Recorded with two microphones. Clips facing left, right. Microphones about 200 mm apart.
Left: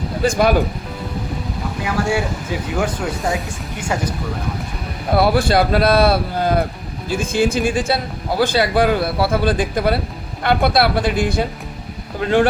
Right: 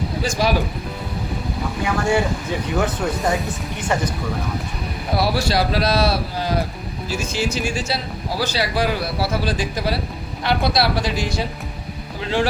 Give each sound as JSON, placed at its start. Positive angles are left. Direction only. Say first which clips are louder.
{"t": 0.2, "sound": "speech", "louder": "left 6 dB", "side_deg": 55}
{"t": 2.0, "sound": "speech", "louder": "even", "side_deg": 10}
{"t": 5.1, "sound": "speech", "louder": "left 5 dB", "side_deg": 55}